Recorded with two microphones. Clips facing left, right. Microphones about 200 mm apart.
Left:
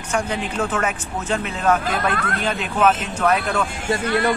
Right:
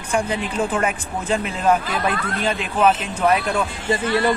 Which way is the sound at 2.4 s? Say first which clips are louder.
Right 1 dB; 10° right (ahead or behind).